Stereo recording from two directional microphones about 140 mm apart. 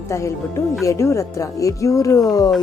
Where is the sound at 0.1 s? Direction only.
20° left (ahead or behind).